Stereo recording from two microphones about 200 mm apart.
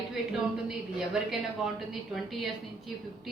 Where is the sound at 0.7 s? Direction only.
5° right (ahead or behind).